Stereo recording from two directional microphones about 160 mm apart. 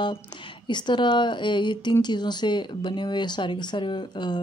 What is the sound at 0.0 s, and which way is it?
A woman's voice, 30° left (ahead or behind).